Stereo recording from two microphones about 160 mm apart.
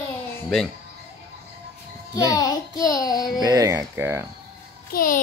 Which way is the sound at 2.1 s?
20° left (ahead or behind).